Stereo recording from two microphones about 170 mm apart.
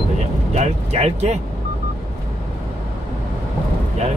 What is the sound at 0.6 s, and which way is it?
Speech, 40° right (ahead or behind).